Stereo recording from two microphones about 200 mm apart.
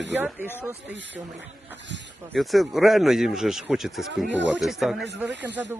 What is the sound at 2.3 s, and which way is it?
Speech, centre (ahead or behind).